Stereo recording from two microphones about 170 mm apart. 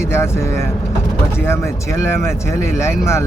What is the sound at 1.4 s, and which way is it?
Speech, 15° left (ahead or behind).